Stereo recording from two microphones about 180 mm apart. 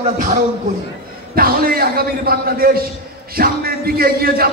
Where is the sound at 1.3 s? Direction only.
55° right (ahead or behind).